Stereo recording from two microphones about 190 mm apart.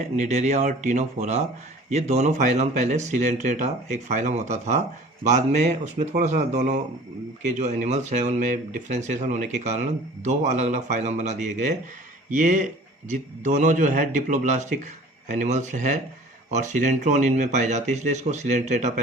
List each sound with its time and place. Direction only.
0.2 s speech: 35° right (ahead or behind)